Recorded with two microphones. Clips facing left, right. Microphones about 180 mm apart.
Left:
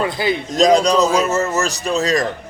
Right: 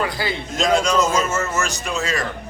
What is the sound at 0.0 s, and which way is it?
Speech, 20° left (ahead or behind).